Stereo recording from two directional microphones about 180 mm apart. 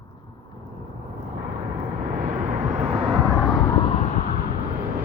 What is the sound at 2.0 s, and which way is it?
Vehicle, 50° right (ahead or behind).